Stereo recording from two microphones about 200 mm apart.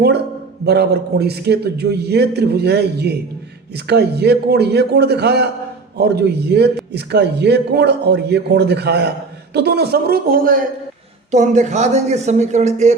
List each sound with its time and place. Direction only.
0.6 s a man's voice: 55° right (ahead or behind); by 13.0 s 35° right (ahead or behind)